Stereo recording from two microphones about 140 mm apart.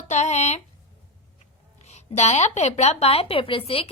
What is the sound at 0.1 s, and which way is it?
Speech, 55° left (ahead or behind).